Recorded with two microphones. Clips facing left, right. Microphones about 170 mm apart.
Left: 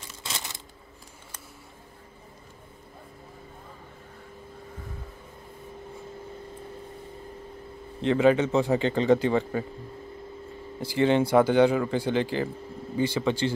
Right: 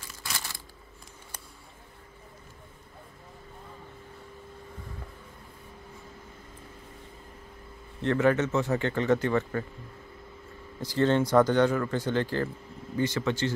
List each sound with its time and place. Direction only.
0.0 s a sound: 20° left (ahead or behind)
8.1 s speech: 15° left (ahead or behind)
10.8 s speech: 10° left (ahead or behind)